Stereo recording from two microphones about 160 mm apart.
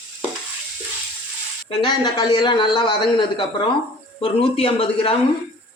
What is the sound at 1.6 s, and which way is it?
Speech, 25° left (ahead or behind).